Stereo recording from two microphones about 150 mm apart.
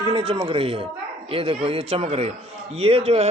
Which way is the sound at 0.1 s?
40° right (ahead or behind).